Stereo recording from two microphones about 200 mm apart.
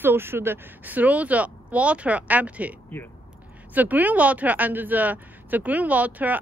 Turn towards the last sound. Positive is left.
turn(degrees=-10)  # may be behind; listen again after turning